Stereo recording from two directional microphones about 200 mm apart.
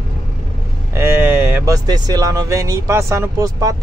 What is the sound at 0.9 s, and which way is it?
Speech, 15° right (ahead or behind).